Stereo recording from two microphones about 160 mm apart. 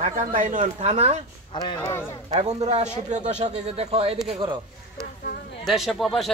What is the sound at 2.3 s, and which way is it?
Speech, 45° right (ahead or behind).